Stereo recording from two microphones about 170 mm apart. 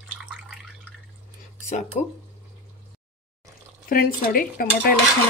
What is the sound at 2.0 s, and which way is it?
Speech, 45° left (ahead or behind).